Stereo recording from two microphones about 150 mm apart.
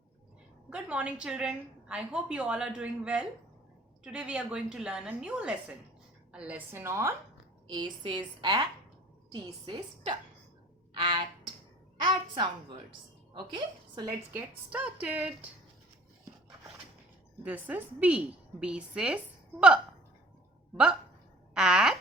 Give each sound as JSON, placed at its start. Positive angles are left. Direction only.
{"t": 0.7, "sound": "a woman's voice", "side_deg": -5}
{"t": 7.7, "sound": "a woman's voice", "side_deg": -30}
{"t": 10.9, "sound": "a sound", "side_deg": -35}
{"t": 12.0, "sound": "a woman's voice", "side_deg": -35}
{"t": 14.3, "sound": "a woman's voice", "side_deg": -10}
{"t": 17.4, "sound": "a woman's voice", "side_deg": -10}
{"t": 21.5, "sound": "a sound", "side_deg": -5}